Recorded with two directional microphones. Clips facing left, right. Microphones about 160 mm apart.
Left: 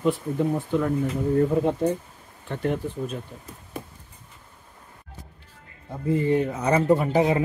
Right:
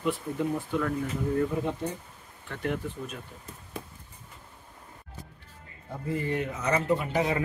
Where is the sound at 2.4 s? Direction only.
30° left (ahead or behind).